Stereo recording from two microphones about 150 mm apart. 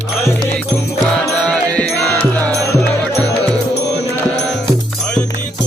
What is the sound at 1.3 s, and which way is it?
Music, 10° left (ahead or behind).